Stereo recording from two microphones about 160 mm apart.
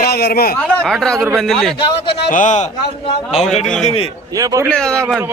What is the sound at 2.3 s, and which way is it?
A man's voice, 50° left (ahead or behind).